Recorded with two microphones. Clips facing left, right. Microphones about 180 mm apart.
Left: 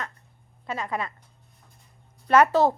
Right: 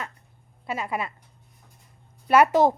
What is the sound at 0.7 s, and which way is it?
Speech, 10° right (ahead or behind).